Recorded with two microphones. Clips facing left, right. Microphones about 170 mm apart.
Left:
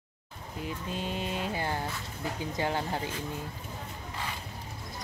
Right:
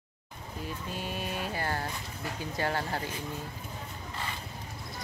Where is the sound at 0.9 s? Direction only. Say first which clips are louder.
Left 2 dB; 20° left (ahead or behind).